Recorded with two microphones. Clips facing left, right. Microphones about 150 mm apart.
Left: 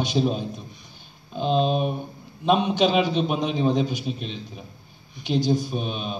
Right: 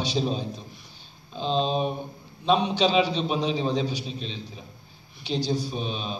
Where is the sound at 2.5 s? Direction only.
50° left (ahead or behind).